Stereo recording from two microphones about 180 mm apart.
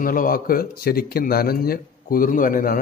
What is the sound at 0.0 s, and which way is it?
A man's voice, 50° left (ahead or behind).